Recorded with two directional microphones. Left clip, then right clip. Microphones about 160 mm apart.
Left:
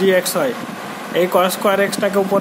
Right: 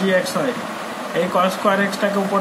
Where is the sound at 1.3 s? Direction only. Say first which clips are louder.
Left 1 dB; 90° left.